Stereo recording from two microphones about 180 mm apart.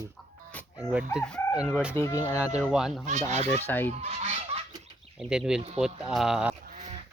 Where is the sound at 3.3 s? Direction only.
40° right (ahead or behind).